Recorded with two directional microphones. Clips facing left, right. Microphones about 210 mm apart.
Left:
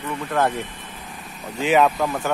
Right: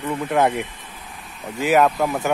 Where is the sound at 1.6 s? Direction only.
5° right (ahead or behind).